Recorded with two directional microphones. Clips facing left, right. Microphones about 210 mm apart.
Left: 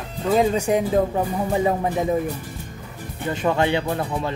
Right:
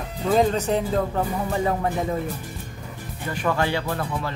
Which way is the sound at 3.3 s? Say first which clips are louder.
Left 3 dB; 20° left (ahead or behind).